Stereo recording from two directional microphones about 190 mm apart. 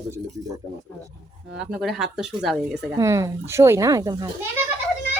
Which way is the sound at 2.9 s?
15° right (ahead or behind).